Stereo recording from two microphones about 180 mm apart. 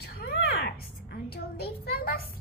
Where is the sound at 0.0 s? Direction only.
60° left (ahead or behind).